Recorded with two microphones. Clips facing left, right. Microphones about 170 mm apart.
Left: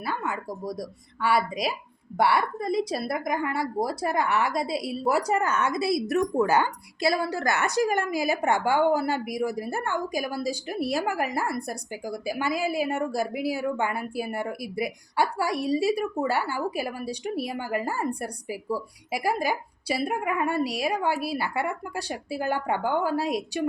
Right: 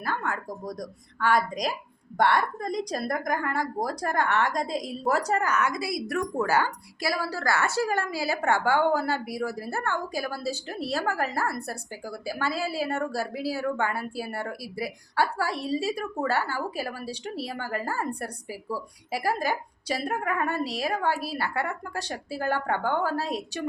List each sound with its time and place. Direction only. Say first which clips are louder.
0.0 s a woman's voice: even; 5° left (ahead or behind)
5.4 s a woman's voice: left 1 dB; 25° left (ahead or behind)